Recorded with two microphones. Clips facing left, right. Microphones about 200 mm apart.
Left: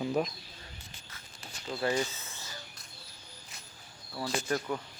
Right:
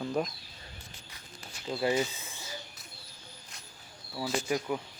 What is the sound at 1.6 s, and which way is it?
Speech, 15° right (ahead or behind).